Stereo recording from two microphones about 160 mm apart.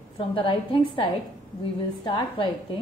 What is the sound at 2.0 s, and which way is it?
Speech, 30° left (ahead or behind).